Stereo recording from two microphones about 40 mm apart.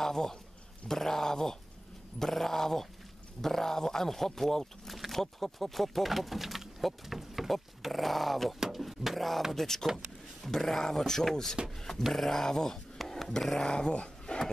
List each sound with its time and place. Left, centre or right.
0.0 s a man's voice: centre
4.9 s a sound: centre
5.2 s speech: centre
8.5 s speech: centre
13.7 s speech: left